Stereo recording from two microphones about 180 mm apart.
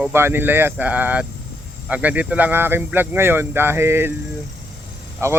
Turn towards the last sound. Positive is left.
turn(degrees=-15)  # may be behind; listen again after turning